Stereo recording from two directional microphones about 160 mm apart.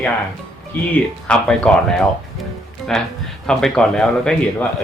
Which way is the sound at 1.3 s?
5° left (ahead or behind).